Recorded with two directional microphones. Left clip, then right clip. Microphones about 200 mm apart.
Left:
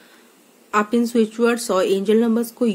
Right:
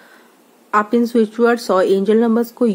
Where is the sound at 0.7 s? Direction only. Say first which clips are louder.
Right 4 dB; 20° right (ahead or behind).